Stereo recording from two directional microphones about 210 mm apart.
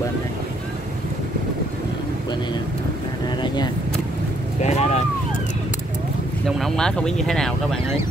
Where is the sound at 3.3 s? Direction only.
20° left (ahead or behind).